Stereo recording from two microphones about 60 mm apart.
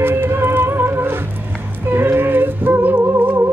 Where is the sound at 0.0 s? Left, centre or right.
Right.